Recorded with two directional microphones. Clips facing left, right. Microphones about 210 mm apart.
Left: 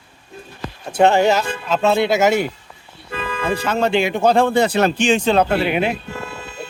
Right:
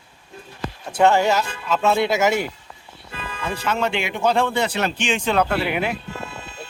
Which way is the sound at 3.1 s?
80° left.